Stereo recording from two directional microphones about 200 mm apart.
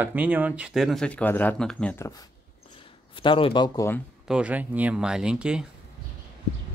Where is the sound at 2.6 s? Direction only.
25° left (ahead or behind).